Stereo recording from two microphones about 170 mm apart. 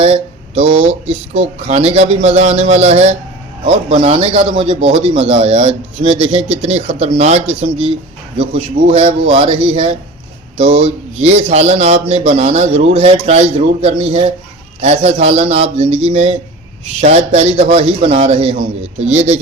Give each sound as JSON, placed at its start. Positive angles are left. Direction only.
{"t": 0.0, "sound": "speech", "side_deg": -35}